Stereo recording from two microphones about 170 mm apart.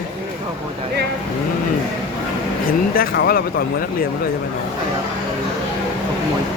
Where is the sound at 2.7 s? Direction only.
60° left (ahead or behind).